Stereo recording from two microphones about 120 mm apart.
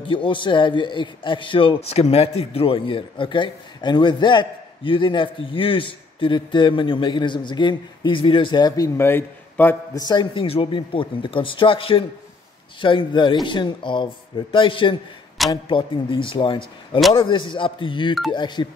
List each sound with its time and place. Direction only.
0.0 s a man's voice: 45° left (ahead or behind); by 9.8 s 15° left (ahead or behind)
9.9 s a man's voice: 35° left (ahead or behind)